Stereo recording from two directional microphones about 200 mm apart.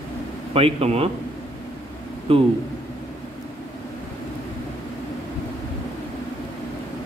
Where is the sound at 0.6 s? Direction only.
30° right (ahead or behind).